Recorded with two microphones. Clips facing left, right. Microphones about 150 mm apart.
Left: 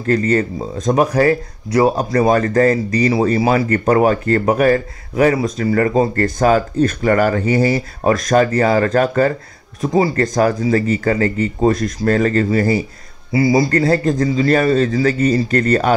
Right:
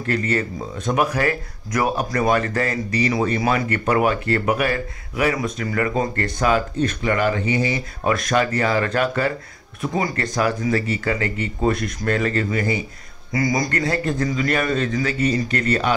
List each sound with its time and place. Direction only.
0.0 s speech: 35° left (ahead or behind)
10.2 s speech: 45° left (ahead or behind)